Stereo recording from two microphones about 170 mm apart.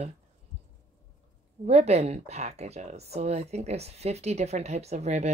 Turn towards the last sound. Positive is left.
turn(degrees=-40)  # may be behind; listen again after turning